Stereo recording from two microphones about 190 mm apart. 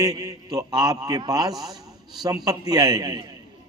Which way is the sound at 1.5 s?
Centre (ahead or behind).